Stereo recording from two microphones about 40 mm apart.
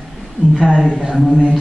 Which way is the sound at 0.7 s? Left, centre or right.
Centre.